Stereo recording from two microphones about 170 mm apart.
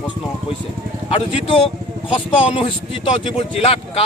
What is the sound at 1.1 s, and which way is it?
Speech, 35° left (ahead or behind).